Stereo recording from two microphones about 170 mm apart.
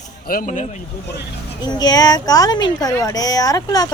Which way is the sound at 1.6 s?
25° left (ahead or behind).